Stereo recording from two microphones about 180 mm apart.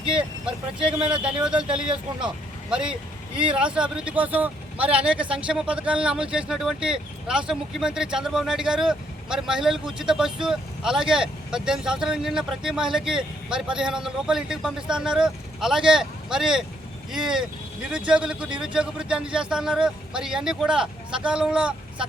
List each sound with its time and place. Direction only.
0.9 s a man's voice: 30° right (ahead or behind)
1.2 s speech: 5° right (ahead or behind)
1.5 s a man's voice: 30° right (ahead or behind)
2.6 s speech: 5° right (ahead or behind)